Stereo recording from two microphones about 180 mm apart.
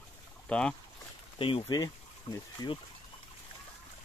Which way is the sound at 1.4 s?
30° left (ahead or behind).